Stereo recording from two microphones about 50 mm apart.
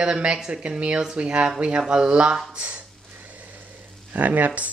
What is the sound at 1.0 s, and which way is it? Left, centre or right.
Speech, centre.